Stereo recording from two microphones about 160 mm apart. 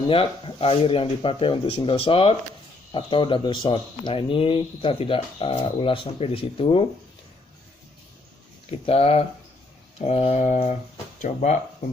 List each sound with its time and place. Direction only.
0.1 s speech: 35° left (ahead or behind)
8.6 s speech: 40° left (ahead or behind)